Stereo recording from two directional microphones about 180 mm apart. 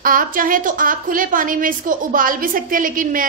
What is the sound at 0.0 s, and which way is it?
A woman's voice, 50° right (ahead or behind).